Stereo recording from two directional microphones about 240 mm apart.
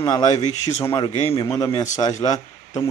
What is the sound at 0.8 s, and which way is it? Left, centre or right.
A man's voice, centre.